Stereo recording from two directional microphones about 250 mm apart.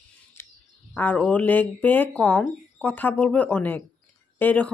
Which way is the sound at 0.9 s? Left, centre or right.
Centre.